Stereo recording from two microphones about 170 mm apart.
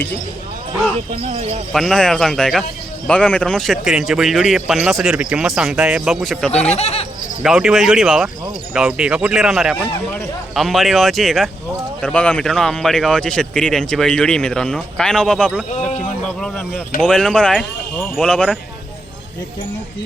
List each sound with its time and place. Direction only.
1.1 s speech: 40° right (ahead or behind)
1.7 s speech: centre (ahead or behind)
6.5 s speech: 40° left (ahead or behind)
7.4 s speech: 5° right (ahead or behind)